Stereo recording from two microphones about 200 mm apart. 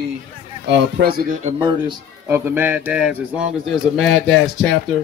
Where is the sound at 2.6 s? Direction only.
10° right (ahead or behind).